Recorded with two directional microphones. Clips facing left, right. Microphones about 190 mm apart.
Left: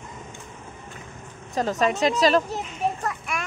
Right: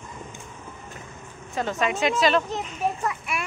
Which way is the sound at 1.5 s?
40° left (ahead or behind).